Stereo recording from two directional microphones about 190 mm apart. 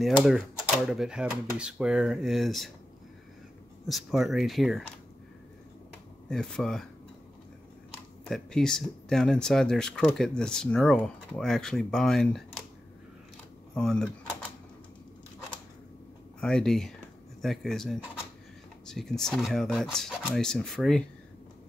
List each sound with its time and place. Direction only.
0.0 s speech: centre (ahead or behind)
3.8 s speech: centre (ahead or behind)
6.2 s speech: 5° left (ahead or behind)
8.3 s speech: 5° left (ahead or behind)
13.7 s speech: 5° left (ahead or behind)
16.3 s speech: 5° left (ahead or behind)